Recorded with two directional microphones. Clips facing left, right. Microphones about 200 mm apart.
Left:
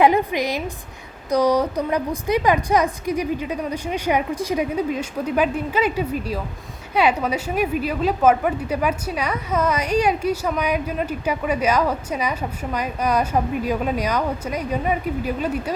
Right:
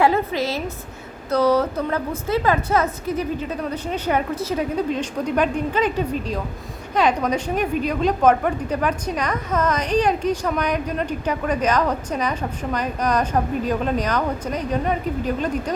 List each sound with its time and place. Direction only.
0.0 s a woman's voice: 15° left (ahead or behind)